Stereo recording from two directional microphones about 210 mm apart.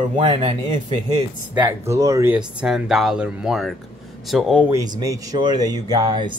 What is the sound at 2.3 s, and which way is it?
Speech, centre (ahead or behind).